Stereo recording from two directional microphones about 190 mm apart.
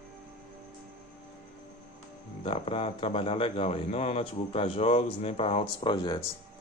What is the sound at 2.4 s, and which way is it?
A man's voice, 30° left (ahead or behind).